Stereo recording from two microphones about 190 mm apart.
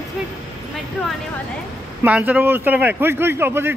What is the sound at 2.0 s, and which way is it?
Speech, 5° right (ahead or behind).